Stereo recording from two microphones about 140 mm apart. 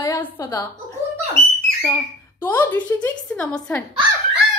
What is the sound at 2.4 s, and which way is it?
A child's voice, 15° left (ahead or behind).